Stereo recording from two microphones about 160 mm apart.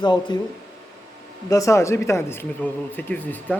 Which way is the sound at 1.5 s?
20° left (ahead or behind).